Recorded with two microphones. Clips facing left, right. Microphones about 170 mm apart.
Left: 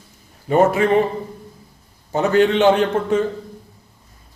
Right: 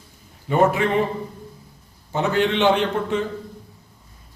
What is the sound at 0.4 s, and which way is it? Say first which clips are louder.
Speech: left 3 dB; 40° left (ahead or behind).